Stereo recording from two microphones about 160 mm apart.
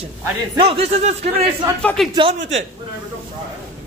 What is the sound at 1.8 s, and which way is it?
Speech, centre (ahead or behind).